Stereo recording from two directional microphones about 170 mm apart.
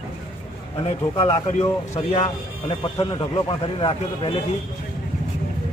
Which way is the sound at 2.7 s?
25° left (ahead or behind).